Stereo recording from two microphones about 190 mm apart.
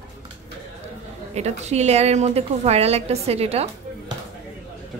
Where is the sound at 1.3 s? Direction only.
35° right (ahead or behind).